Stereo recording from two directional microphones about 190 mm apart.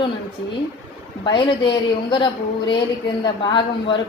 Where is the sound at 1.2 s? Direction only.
25° left (ahead or behind).